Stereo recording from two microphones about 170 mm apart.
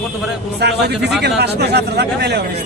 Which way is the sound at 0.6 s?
75° right (ahead or behind).